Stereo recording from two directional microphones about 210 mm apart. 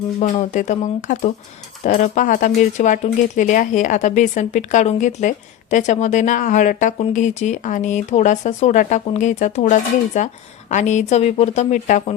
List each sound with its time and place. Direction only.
0.2 s speech: 35° left (ahead or behind)